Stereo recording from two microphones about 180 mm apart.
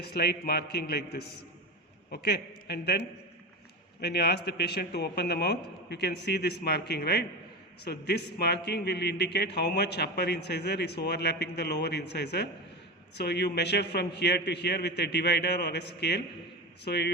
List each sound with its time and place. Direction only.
0.0 s a man's voice: 60° left (ahead or behind)
4.0 s a man's voice: 65° left (ahead or behind)